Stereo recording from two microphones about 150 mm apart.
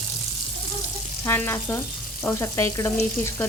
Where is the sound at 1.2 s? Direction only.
15° left (ahead or behind).